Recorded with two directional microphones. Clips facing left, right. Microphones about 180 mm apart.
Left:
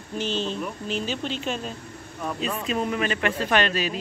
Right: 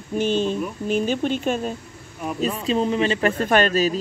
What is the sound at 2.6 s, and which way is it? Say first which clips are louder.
Speech: right 6 dB; 30° right (ahead or behind).